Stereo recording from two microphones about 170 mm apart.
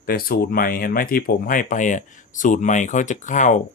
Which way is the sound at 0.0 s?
60° left (ahead or behind).